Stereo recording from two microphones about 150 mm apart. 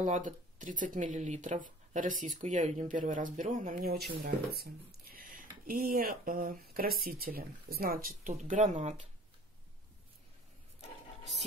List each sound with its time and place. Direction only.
0.0 s speech: 55° right (ahead or behind)
4.2 s speech: 85° right; by 8.9 s 55° right (ahead or behind)